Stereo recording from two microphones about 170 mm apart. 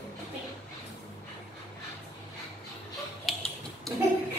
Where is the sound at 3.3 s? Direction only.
Centre (ahead or behind).